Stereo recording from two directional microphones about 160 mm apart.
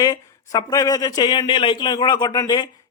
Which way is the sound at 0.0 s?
25° left (ahead or behind).